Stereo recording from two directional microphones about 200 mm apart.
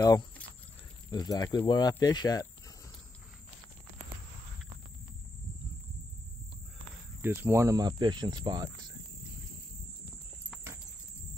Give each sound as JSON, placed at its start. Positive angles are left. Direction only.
{"t": 0.0, "sound": "speech", "side_deg": 20}
{"t": 7.2, "sound": "speech", "side_deg": -10}